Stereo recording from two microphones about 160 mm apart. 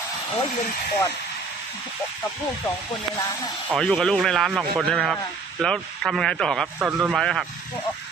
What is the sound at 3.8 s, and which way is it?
Speech, centre (ahead or behind).